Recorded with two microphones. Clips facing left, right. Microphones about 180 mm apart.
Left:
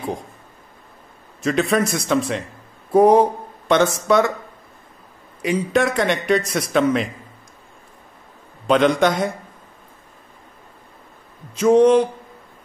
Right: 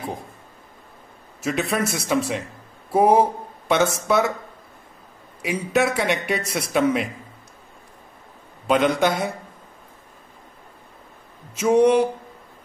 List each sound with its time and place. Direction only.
1.4 s a man's voice: 5° right (ahead or behind)
5.4 s a man's voice: 5° right (ahead or behind)
8.6 s a man's voice: 5° right (ahead or behind)
11.5 s a man's voice: 10° right (ahead or behind)